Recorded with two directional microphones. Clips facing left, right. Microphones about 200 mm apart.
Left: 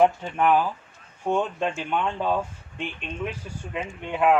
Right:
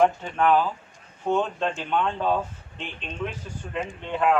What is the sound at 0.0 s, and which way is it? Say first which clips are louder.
Speech: left 1 dB; 10° left (ahead or behind).